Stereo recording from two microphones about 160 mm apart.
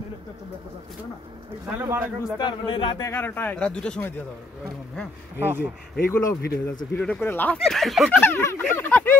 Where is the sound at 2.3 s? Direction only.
30° left (ahead or behind).